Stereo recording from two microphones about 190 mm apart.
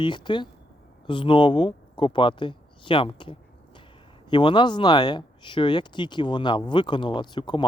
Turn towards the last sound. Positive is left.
turn(degrees=25)  # may be behind; listen again after turning